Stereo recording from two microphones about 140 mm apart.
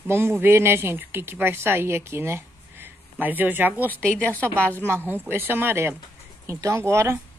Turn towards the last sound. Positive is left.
turn(degrees=-20)  # may be behind; listen again after turning